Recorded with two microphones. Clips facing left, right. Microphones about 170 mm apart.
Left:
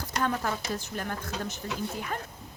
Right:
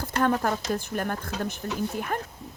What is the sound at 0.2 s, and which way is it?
Speech, 50° right (ahead or behind).